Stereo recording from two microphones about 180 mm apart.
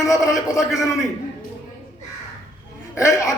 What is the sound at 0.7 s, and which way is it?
Speech, centre (ahead or behind).